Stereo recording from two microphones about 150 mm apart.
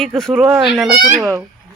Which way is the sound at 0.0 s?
Centre (ahead or behind).